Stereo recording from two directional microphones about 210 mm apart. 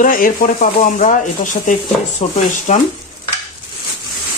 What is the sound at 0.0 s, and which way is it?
Speech, 40° left (ahead or behind).